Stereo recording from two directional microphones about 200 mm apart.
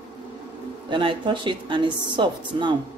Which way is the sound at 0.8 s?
25° right (ahead or behind).